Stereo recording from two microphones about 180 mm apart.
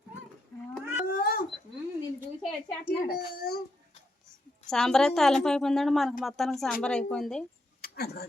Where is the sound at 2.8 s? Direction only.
55° left (ahead or behind).